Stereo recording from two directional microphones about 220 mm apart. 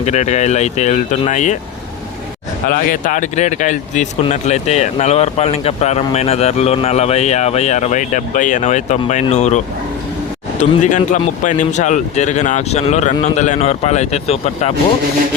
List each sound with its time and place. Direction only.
0.0 s speech: 30° left (ahead or behind)
2.6 s speech: 40° left (ahead or behind)